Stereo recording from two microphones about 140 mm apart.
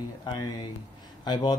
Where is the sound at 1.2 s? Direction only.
35° left (ahead or behind).